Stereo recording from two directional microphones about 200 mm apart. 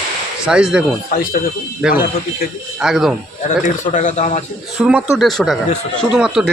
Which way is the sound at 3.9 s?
35° left (ahead or behind).